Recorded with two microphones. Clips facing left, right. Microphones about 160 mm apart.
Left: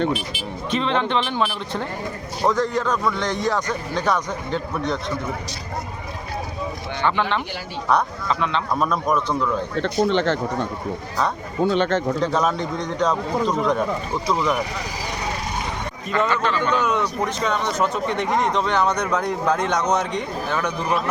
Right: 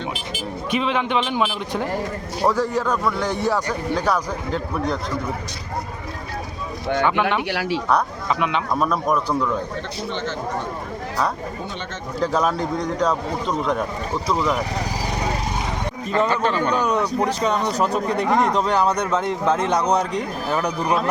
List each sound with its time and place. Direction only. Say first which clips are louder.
0.7 s a man's voice: even; 10° right (ahead or behind)
7.0 s a man's voice: even; 5° right (ahead or behind)
7.4 s speech: right 9 dB; 90° right
7.9 s a man's voice: left 4 dB; 5° right (ahead or behind)
9.8 s speech: left 8 dB; 80° left
11.7 s speech: left 12 dB; 70° left (ahead or behind)
12.2 s speech: even; 5° right (ahead or behind)
14.3 s speech: right 1 dB; centre (ahead or behind)
16.1 s speech: right 1 dB; 35° right (ahead or behind)